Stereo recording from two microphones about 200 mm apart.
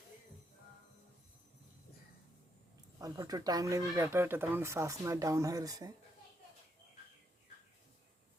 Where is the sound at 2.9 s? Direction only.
15° right (ahead or behind).